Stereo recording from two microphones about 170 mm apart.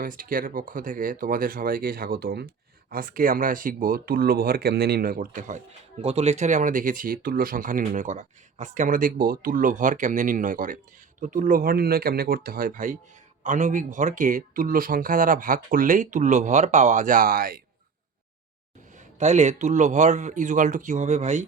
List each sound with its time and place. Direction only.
0.0 s speech: 55° right (ahead or behind)
18.9 s speech: 45° right (ahead or behind)